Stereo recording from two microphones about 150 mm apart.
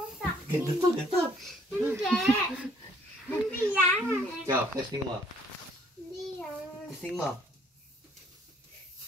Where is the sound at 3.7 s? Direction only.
20° right (ahead or behind).